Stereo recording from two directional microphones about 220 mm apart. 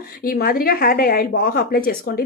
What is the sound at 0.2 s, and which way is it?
A woman's voice, 40° left (ahead or behind).